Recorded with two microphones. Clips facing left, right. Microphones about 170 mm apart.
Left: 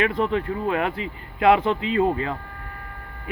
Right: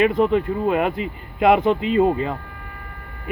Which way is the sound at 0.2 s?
10° right (ahead or behind).